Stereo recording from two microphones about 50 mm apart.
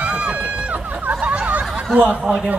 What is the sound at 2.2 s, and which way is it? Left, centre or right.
Speech, centre.